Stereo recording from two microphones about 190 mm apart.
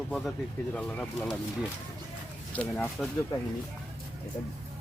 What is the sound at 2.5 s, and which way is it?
Speech, 5° left (ahead or behind).